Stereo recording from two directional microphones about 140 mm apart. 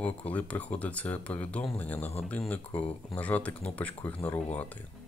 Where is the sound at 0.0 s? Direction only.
10° left (ahead or behind).